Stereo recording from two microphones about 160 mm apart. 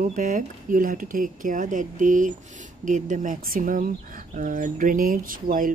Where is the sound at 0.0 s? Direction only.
55° right (ahead or behind).